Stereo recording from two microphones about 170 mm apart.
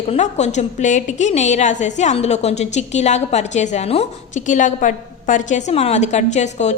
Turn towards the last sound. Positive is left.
turn(degrees=40)  # may be behind; listen again after turning